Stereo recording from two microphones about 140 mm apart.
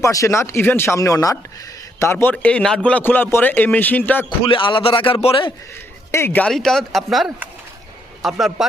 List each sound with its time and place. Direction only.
0.0 s a man's voice: 20° left (ahead or behind)
4.3 s a man's voice: 35° left (ahead or behind)
6.1 s a man's voice: 20° left (ahead or behind); by 8.6 s centre (ahead or behind)